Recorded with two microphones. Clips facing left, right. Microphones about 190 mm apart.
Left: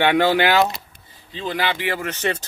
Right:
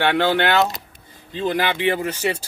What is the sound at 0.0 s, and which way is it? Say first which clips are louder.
Speech: left 2 dB; 10° left (ahead or behind).